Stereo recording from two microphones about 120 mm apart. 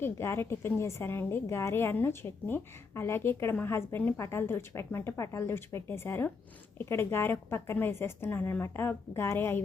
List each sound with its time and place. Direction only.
0.0 s a woman's voice: 20° left (ahead or behind)